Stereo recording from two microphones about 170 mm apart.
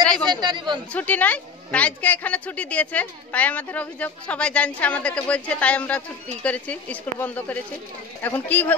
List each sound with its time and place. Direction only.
0.3 s speech: 25° right (ahead or behind)
0.9 s a woman's voice: 10° left (ahead or behind)